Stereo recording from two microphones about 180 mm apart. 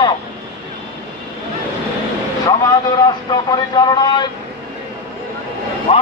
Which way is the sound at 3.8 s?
20° left (ahead or behind).